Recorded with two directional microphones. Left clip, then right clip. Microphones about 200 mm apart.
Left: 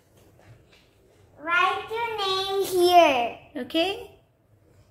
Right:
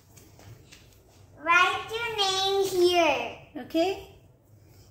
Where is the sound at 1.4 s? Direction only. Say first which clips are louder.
Right 1 dB; 25° left (ahead or behind).